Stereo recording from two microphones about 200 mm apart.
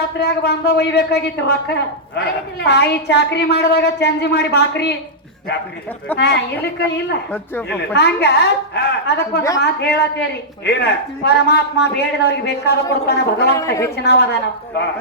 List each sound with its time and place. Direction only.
0.2 s a woman's voice: 55° left (ahead or behind)
6.1 s a woman's voice: 55° left (ahead or behind)
13.5 s a woman's voice: 15° left (ahead or behind)
13.9 s a woman's voice: 55° left (ahead or behind)